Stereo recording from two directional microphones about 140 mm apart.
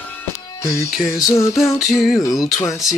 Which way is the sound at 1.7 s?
Centre (ahead or behind).